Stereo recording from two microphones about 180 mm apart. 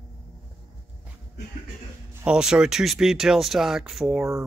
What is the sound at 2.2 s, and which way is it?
Speech, 5° right (ahead or behind).